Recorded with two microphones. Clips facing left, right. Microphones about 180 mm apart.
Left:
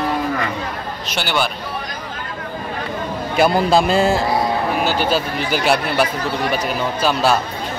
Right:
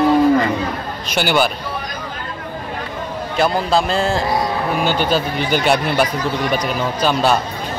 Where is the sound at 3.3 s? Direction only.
10° left (ahead or behind).